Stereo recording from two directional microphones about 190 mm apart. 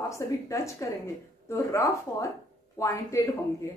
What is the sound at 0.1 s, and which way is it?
A woman's voice, 15° left (ahead or behind).